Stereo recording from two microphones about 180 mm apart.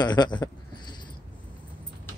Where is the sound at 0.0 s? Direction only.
25° left (ahead or behind).